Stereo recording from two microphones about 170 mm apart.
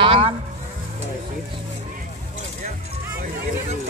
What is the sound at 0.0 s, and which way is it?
Vehicle, 30° right (ahead or behind).